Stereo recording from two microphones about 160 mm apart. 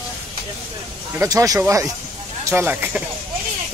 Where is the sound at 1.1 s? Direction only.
20° right (ahead or behind).